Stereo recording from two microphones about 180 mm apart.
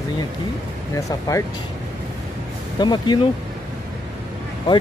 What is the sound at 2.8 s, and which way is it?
Speech, 25° left (ahead or behind).